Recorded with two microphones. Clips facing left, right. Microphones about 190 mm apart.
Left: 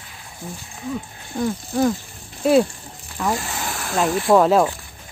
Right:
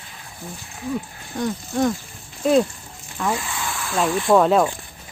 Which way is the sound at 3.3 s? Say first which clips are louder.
Left 1 dB; 40° left (ahead or behind).